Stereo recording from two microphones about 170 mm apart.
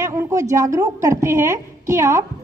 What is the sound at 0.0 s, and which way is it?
A woman's voice, 15° right (ahead or behind).